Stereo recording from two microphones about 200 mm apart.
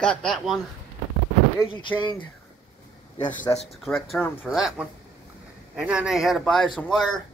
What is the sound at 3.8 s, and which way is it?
Speech, centre (ahead or behind).